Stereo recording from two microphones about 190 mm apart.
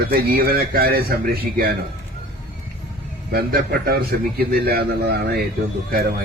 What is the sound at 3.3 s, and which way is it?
A man's voice, 55° right (ahead or behind).